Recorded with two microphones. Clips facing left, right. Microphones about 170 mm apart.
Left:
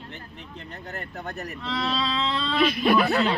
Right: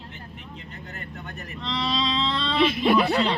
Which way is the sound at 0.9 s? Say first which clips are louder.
Left 5 dB; 40° left (ahead or behind).